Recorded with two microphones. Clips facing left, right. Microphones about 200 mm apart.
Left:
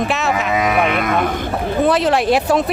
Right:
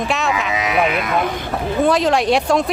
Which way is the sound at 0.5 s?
50° left (ahead or behind).